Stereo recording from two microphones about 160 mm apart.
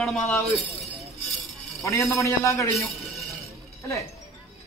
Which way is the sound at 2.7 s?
Centre (ahead or behind).